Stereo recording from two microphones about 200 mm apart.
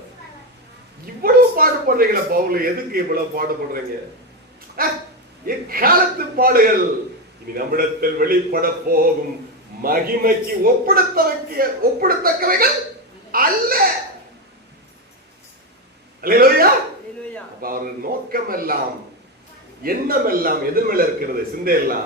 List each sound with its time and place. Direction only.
1.2 s a man's voice: 45° right (ahead or behind)
4.8 s a man's voice: 45° right (ahead or behind)
16.2 s a sound: 45° right (ahead or behind)
17.6 s a man's voice: 45° right (ahead or behind)
19.8 s a man's voice: 45° right (ahead or behind)